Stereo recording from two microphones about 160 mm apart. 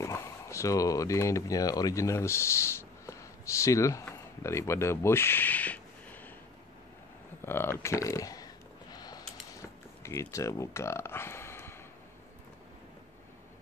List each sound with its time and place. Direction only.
0.0 s speech: 20° left (ahead or behind)
7.4 s speech: 15° left (ahead or behind)
8.9 s a sound: 25° left (ahead or behind)